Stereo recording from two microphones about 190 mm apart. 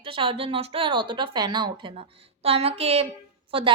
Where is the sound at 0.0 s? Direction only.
30° right (ahead or behind).